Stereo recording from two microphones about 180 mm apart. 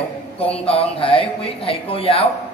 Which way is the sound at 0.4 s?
30° left (ahead or behind).